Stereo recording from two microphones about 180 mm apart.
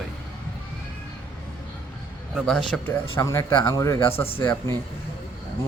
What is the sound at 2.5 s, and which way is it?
Speech, 5° left (ahead or behind).